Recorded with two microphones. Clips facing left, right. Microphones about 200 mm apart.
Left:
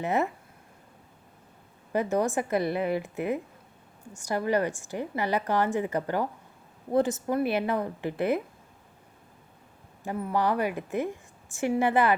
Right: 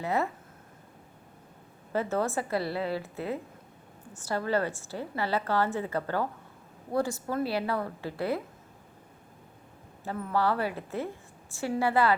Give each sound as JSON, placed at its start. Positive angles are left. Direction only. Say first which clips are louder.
{"t": 0.0, "sound": "a woman's voice", "louder": "left 2 dB", "side_deg": 20}
{"t": 1.9, "sound": "a woman's voice", "louder": "left 3 dB", "side_deg": 15}
{"t": 10.0, "sound": "a woman's voice", "louder": "left 1 dB", "side_deg": 15}